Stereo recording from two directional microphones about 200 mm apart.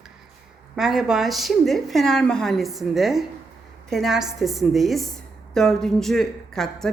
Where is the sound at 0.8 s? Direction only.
Centre (ahead or behind).